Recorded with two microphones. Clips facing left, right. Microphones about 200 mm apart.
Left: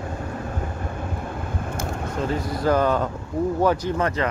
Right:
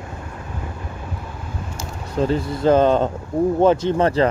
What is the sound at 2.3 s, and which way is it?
Speech, 25° right (ahead or behind).